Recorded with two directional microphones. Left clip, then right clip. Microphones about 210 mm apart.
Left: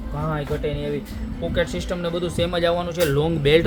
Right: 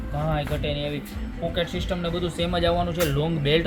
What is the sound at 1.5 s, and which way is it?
Speech, 20° left (ahead or behind).